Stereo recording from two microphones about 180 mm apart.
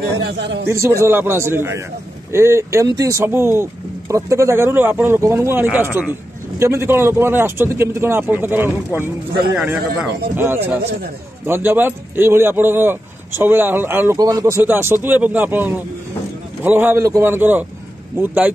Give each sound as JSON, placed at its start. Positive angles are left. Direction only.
{"t": 0.2, "sound": "a man's voice", "side_deg": -70}
{"t": 0.7, "sound": "a man's voice", "side_deg": -15}